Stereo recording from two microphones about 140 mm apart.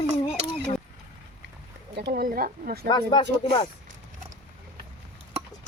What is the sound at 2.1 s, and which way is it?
Speech, 90° right.